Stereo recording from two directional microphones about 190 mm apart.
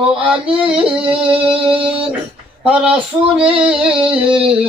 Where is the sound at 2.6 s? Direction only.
5° right (ahead or behind).